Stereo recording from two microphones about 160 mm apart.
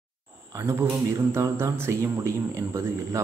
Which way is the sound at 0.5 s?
20° right (ahead or behind).